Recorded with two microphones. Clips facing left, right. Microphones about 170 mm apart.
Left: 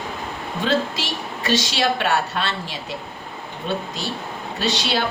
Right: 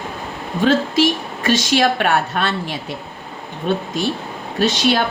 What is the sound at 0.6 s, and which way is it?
A woman's voice, 50° right (ahead or behind).